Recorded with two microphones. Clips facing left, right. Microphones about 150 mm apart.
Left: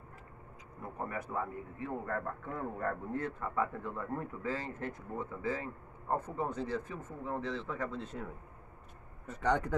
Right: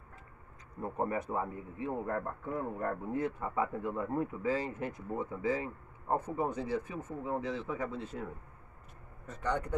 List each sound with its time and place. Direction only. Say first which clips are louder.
0.9 s a man's voice: right 4 dB; 25° right (ahead or behind); by 8.3 s 5° right (ahead or behind)
9.4 s a man's voice: left 3 dB; 90° left